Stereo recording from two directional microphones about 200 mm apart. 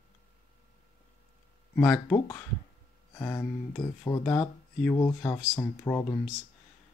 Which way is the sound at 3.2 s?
15° left (ahead or behind).